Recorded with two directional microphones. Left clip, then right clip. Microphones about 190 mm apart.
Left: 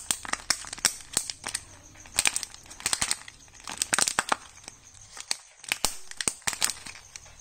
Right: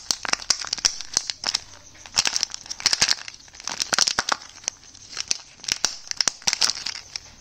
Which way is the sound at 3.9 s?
20° right (ahead or behind).